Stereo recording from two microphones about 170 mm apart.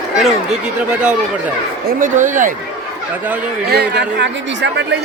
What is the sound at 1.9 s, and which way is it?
Speech, 50° right (ahead or behind).